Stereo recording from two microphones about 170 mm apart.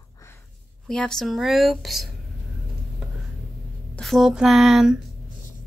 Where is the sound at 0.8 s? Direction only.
5° left (ahead or behind).